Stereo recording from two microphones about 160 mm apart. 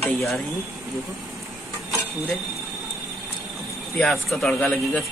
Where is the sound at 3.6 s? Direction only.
Centre (ahead or behind).